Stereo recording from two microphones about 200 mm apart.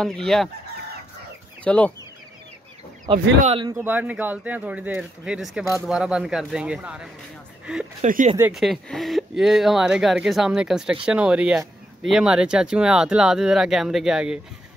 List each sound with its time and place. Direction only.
0.0 s speech: centre (ahead or behind)
1.6 s speech: 5° left (ahead or behind)
3.1 s speech: 25° right (ahead or behind)
3.7 s speech: 10° right (ahead or behind)
8.0 s speech: 40° right (ahead or behind)
8.4 s speech: 5° right (ahead or behind)